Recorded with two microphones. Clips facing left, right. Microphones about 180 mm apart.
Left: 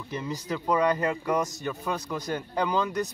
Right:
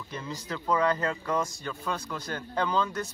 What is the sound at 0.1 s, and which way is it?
A man's voice, 15° left (ahead or behind).